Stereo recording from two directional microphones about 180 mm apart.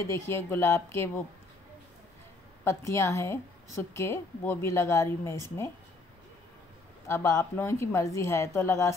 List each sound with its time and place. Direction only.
0.0 s a woman's voice: 15° left (ahead or behind)
2.6 s a woman's voice: 15° left (ahead or behind)
7.1 s a woman's voice: 15° left (ahead or behind)